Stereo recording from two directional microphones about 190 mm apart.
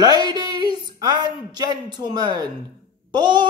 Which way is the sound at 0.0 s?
20° right (ahead or behind).